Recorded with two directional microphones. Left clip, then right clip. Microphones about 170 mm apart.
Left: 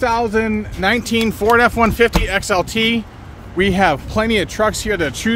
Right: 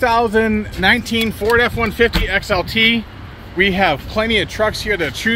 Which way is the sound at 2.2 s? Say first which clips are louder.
Even; 35° left (ahead or behind).